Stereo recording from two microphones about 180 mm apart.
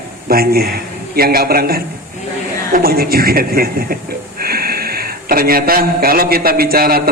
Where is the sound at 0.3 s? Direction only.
55° right (ahead or behind).